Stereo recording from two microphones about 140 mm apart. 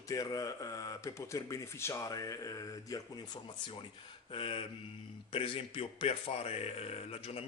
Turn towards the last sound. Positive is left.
turn(degrees=45)  # may be behind; listen again after turning